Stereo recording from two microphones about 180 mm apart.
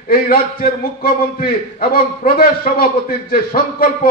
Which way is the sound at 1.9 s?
55° left (ahead or behind).